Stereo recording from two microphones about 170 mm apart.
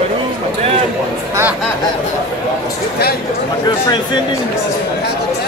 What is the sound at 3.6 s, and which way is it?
Speech, 25° left (ahead or behind).